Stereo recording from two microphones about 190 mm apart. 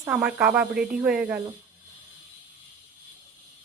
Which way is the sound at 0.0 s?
10° right (ahead or behind).